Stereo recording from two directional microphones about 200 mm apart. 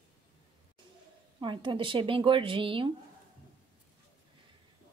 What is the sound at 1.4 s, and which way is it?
Speech, 25° right (ahead or behind).